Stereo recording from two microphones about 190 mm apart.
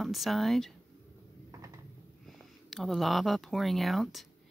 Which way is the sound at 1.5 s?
15° right (ahead or behind).